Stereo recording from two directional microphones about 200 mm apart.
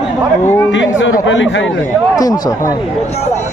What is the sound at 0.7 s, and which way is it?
Speech, 65° left (ahead or behind).